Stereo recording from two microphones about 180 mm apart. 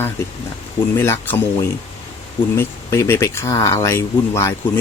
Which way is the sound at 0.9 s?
10° left (ahead or behind).